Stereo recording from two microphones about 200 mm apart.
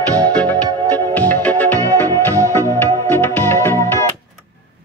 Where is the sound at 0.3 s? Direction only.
10° left (ahead or behind).